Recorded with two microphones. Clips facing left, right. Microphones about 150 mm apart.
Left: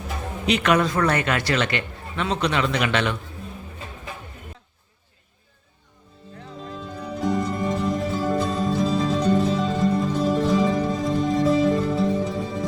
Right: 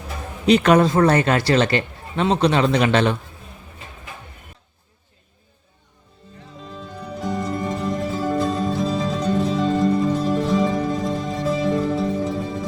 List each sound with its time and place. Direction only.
0.4 s a man's voice: 35° right (ahead or behind)
6.7 s music: centre (ahead or behind)